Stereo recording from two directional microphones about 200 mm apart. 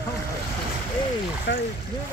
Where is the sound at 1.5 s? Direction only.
60° left (ahead or behind).